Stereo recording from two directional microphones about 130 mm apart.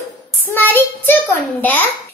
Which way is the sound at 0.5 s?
15° left (ahead or behind).